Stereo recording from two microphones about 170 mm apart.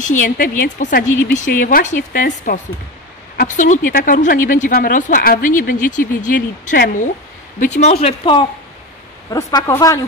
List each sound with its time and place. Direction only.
0.0 s speech: 50° left (ahead or behind); by 10.0 s 20° left (ahead or behind)